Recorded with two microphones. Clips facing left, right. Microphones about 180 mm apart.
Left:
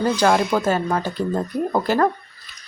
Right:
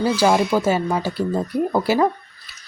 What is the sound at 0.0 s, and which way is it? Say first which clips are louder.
Speech: right 1 dB; 10° right (ahead or behind).